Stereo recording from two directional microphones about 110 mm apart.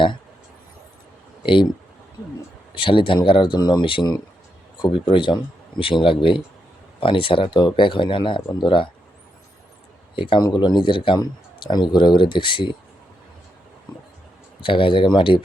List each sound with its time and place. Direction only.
2.7 s a man's voice: 50° left (ahead or behind)
10.2 s a man's voice: 50° left (ahead or behind)
14.6 s a man's voice: 50° left (ahead or behind)